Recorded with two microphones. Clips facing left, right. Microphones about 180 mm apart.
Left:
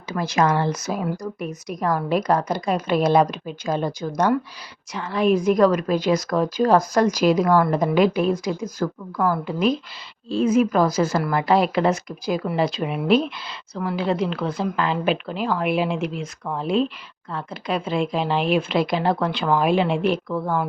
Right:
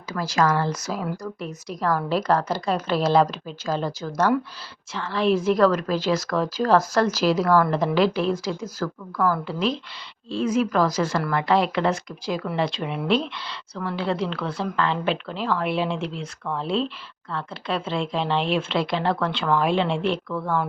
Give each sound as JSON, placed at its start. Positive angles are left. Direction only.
{"t": 0.1, "sound": "speech", "side_deg": 20}